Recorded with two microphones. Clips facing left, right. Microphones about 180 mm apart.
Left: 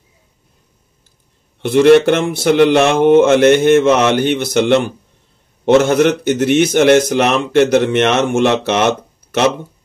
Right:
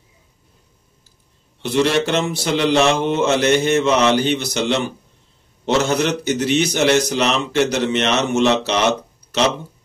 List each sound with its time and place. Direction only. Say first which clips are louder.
1.6 s speech: left 9 dB; 55° left (ahead or behind)